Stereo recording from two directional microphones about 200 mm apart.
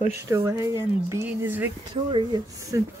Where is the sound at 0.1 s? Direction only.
15° right (ahead or behind).